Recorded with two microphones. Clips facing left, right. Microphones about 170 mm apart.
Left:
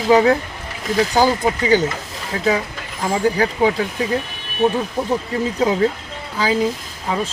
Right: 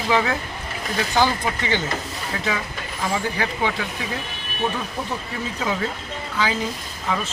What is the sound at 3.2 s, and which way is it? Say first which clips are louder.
Speech: left 8 dB; 40° left (ahead or behind).